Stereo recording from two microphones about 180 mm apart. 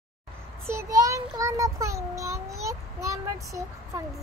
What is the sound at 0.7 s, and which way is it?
Child singing, 15° right (ahead or behind).